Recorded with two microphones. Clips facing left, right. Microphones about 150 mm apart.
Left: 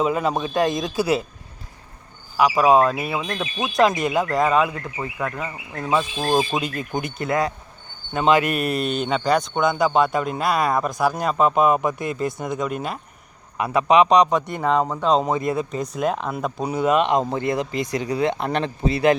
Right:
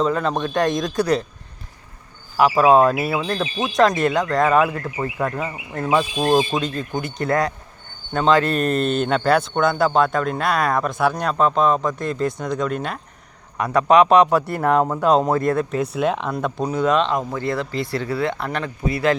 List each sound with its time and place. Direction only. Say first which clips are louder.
0.0 s a man's voice: right 1 dB; 10° left (ahead or behind)
2.4 s a man's voice: right 2 dB; centre (ahead or behind)
6.5 s a man's voice: right 1 dB; 10° left (ahead or behind)
17.1 s speech: left 2 dB; 20° left (ahead or behind)